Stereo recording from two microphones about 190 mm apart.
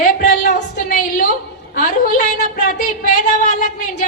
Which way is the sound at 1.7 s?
45° left (ahead or behind).